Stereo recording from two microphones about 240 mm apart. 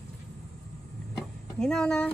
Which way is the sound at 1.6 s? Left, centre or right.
Centre.